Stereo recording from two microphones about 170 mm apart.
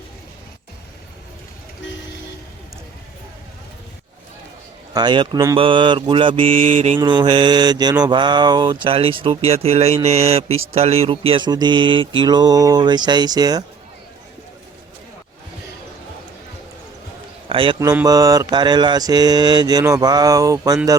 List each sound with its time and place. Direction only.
4.9 s speech: 25° right (ahead or behind)
7.0 s speech: 25° right (ahead or behind)
17.5 s speech: 30° right (ahead or behind)
17.7 s speech: 20° right (ahead or behind)